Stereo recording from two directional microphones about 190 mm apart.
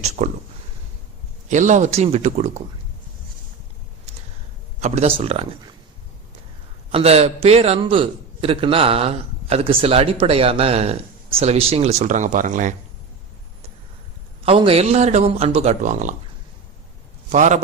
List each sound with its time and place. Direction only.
0.2 s a man's voice: 40° right (ahead or behind)
1.5 s a man's voice: 40° right (ahead or behind)
4.8 s a man's voice: 35° right (ahead or behind)
6.9 s a man's voice: 35° right (ahead or behind)
14.4 s a man's voice: 30° right (ahead or behind)
17.3 s a man's voice: 40° right (ahead or behind)